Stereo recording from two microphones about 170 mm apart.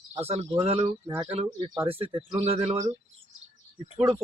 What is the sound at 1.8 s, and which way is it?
Speech, 35° right (ahead or behind).